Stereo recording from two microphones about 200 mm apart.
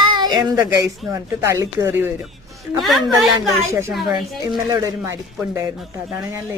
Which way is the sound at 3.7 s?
15° right (ahead or behind).